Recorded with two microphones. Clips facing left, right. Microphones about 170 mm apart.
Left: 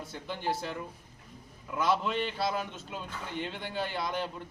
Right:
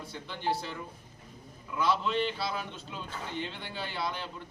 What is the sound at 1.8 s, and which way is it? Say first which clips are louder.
A man's voice: even; 50° left (ahead or behind).